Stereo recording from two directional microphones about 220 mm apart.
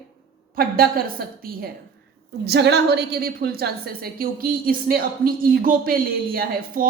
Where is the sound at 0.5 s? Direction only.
40° right (ahead or behind).